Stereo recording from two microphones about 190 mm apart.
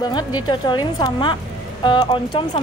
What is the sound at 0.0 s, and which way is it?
Speech, 20° left (ahead or behind).